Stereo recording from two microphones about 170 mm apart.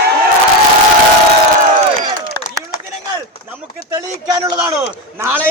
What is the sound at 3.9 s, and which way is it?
A man's voice, 20° right (ahead or behind).